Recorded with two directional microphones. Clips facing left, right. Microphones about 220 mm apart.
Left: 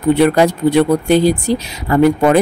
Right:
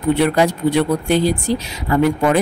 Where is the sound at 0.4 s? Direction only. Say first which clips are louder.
Left 4 dB; 40° left (ahead or behind).